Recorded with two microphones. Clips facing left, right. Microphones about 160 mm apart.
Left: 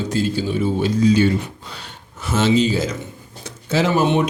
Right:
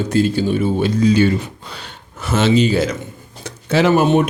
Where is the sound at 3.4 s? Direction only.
65° right (ahead or behind).